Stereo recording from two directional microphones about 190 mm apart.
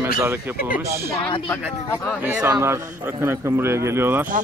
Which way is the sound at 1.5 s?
10° left (ahead or behind).